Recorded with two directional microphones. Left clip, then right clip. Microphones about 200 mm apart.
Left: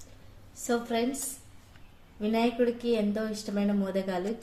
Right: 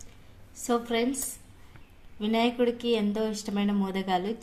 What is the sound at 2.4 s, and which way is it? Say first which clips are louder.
A woman's voice: right 1 dB; 45° right (ahead or behind).